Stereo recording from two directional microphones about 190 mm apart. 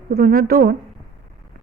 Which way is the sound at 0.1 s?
50° right (ahead or behind).